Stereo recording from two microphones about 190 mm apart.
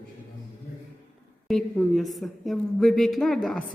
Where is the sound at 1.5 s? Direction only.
Centre (ahead or behind).